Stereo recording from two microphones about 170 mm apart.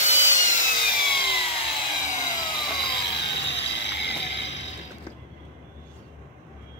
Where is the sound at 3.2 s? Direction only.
85° left.